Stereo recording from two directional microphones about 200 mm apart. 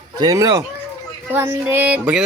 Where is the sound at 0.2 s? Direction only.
15° right (ahead or behind).